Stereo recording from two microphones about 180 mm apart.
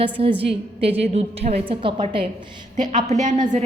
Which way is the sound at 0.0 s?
30° right (ahead or behind).